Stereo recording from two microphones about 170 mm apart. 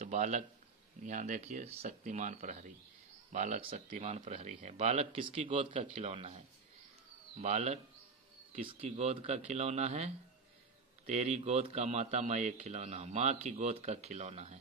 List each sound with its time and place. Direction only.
0.0 s a man's voice: 45° right (ahead or behind)